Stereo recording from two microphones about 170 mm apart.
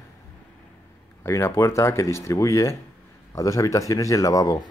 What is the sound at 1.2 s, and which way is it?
Speech, 15° left (ahead or behind).